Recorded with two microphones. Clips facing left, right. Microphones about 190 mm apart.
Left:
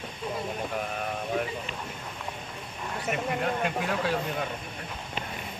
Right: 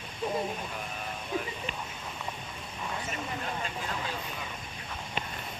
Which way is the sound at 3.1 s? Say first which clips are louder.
Left 7 dB; 65° left (ahead or behind).